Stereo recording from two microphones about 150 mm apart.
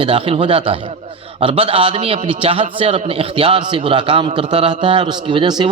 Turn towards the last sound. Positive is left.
turn(degrees=-30)  # may be behind; listen again after turning